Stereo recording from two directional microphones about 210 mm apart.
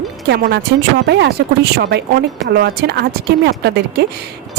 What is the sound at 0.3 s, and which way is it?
Speech, 55° right (ahead or behind).